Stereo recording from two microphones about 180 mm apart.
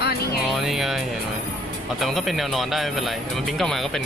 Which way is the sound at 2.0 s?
Centre (ahead or behind).